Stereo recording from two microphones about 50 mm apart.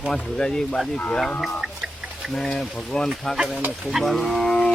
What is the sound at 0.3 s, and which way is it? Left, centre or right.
Speech, centre.